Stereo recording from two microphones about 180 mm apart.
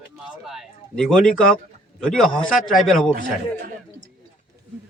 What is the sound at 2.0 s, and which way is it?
Speech, 5° left (ahead or behind).